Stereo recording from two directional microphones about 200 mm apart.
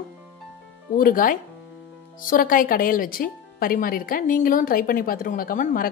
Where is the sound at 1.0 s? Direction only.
45° left (ahead or behind).